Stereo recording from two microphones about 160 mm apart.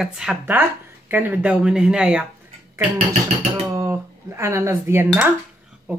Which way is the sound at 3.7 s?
15° right (ahead or behind).